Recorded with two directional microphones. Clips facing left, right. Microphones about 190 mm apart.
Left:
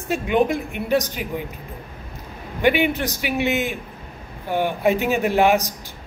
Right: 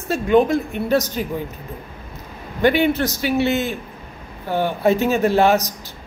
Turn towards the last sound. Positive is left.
turn(degrees=15)  # may be behind; listen again after turning